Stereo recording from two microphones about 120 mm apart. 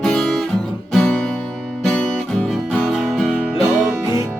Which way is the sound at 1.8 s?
10° left (ahead or behind).